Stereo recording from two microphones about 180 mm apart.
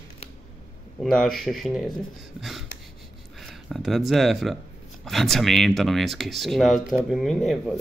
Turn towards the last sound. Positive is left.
turn(degrees=5)  # may be behind; listen again after turning